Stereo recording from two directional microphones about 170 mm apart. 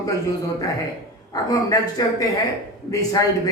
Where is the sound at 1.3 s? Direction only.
20° left (ahead or behind).